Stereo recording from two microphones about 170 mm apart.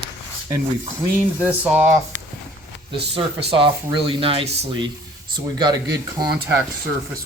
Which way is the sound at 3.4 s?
30° right (ahead or behind).